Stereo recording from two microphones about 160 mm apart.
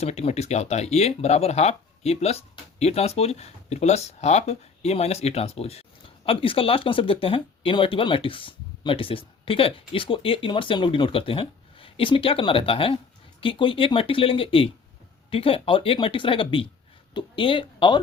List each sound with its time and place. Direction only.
0.0 s speech: 40° left (ahead or behind)